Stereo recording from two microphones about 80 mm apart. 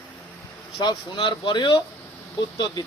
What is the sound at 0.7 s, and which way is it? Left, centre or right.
Speech, left.